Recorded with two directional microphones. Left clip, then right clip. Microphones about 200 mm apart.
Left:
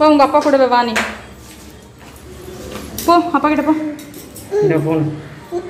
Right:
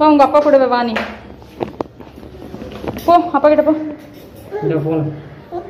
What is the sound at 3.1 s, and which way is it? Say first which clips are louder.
Speech: right 2 dB; 5° right (ahead or behind).